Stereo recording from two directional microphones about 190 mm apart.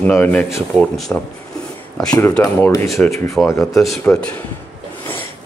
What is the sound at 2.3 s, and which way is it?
Speech, 5° left (ahead or behind).